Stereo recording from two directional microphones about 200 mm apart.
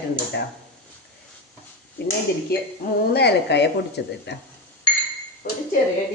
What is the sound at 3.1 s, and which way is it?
Speech, 55° left (ahead or behind).